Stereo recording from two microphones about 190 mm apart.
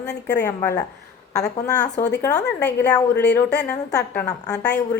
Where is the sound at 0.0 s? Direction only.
60° left (ahead or behind).